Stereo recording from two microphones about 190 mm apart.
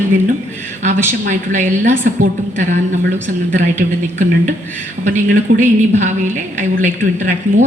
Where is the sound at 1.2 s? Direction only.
40° right (ahead or behind).